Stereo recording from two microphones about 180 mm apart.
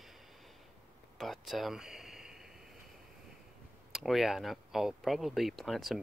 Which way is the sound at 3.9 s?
Centre (ahead or behind).